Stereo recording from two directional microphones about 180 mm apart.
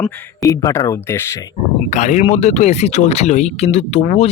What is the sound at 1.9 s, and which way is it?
Speech, 40° left (ahead or behind).